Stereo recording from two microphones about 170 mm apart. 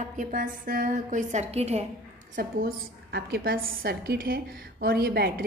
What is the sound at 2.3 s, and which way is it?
A woman's voice, 60° right (ahead or behind).